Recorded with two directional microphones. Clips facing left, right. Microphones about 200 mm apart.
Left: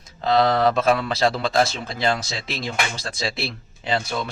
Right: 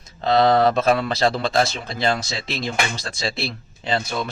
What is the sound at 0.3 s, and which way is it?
Speech, 25° right (ahead or behind).